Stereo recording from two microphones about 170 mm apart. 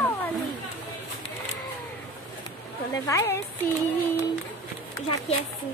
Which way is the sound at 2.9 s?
20° left (ahead or behind).